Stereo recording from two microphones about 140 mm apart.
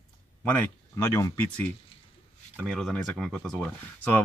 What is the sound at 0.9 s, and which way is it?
Speech, 20° left (ahead or behind).